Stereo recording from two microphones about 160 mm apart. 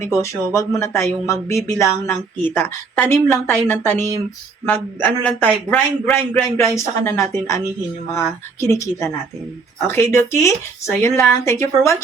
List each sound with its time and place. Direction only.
0.2 s speech: 20° left (ahead or behind)
8.6 s speech: 20° left (ahead or behind)